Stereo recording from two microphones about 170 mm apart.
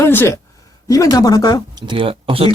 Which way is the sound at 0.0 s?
15° left (ahead or behind).